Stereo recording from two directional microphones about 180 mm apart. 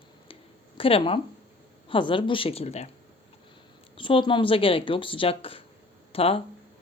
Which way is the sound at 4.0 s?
30° left (ahead or behind).